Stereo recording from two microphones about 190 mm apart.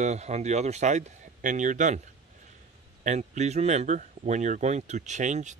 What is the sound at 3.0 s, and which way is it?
Speech, 35° right (ahead or behind).